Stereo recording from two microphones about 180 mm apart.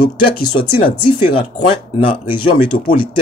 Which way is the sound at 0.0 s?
25° left (ahead or behind).